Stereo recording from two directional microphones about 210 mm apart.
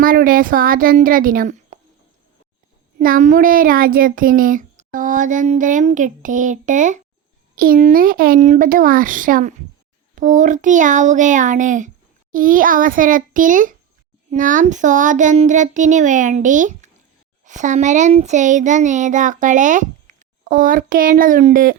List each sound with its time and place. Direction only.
0.0 s speech: 40° right (ahead or behind)
3.0 s a child's voice: 40° right (ahead or behind)